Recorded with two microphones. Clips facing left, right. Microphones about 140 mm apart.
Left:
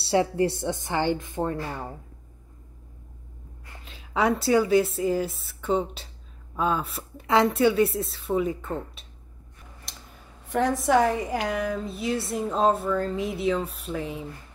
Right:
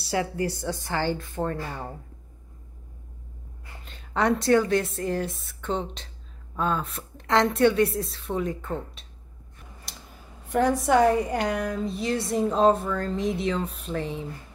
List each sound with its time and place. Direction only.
0.0 s speech: 25° left (ahead or behind); by 2.0 s 10° left (ahead or behind)
3.8 s a woman's voice: 5° left (ahead or behind)
9.9 s a sound: centre (ahead or behind)
10.4 s a woman's voice: centre (ahead or behind)